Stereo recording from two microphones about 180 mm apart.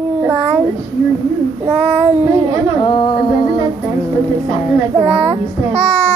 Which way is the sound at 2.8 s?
30° left (ahead or behind).